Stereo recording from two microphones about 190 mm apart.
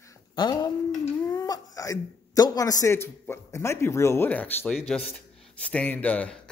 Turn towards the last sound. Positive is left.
turn(degrees=5)  # may be behind; listen again after turning